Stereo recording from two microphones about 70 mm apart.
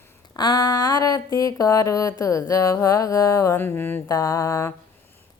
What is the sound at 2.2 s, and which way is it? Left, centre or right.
Music, left.